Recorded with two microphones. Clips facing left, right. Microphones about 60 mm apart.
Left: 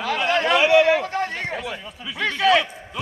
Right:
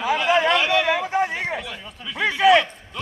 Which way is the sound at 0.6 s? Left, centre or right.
Centre.